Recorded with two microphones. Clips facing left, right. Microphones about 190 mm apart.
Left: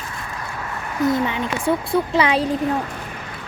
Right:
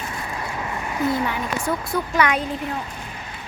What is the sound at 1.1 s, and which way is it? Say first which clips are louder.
Speech: left 2 dB; 25° left (ahead or behind).